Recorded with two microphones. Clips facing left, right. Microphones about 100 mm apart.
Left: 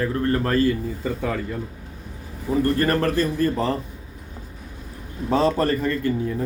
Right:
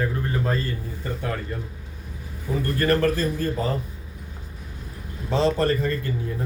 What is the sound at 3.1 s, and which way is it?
Speech, 75° left (ahead or behind).